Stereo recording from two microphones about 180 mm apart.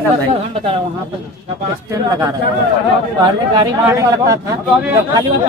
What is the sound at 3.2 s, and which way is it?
A man's voice, 20° right (ahead or behind).